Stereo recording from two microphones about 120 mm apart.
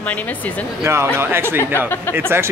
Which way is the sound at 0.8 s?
20° right (ahead or behind).